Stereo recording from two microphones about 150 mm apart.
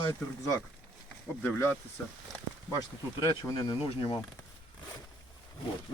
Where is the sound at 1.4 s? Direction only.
15° left (ahead or behind).